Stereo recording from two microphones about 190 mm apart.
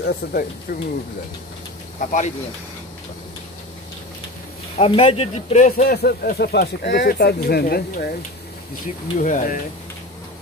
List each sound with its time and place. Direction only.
0.0 s speech: 55° left (ahead or behind)
2.0 s speech: 40° left (ahead or behind)
4.7 s speech: 30° left (ahead or behind)
5.9 s speech: 55° left (ahead or behind)
9.2 s speech: 45° left (ahead or behind)